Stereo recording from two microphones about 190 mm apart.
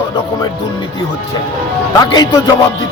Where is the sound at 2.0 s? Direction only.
20° left (ahead or behind).